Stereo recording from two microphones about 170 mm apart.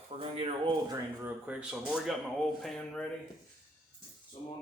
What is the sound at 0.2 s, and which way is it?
Speech, 30° right (ahead or behind).